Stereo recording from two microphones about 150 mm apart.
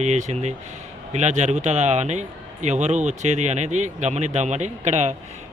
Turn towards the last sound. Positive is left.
turn(degrees=-50)  # may be behind; listen again after turning